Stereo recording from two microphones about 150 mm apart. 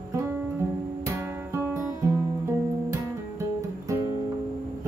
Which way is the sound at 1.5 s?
20° right (ahead or behind).